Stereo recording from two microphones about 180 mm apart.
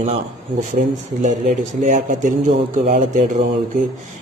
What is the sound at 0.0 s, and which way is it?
Speech, 40° right (ahead or behind).